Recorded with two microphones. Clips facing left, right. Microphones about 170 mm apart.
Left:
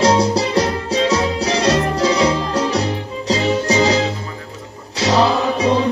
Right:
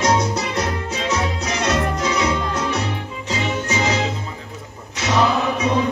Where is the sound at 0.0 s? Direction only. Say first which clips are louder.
Left 5 dB; 30° left (ahead or behind).